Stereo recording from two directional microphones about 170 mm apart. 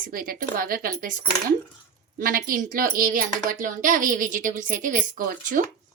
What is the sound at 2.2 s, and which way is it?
Speech, 55° right (ahead or behind).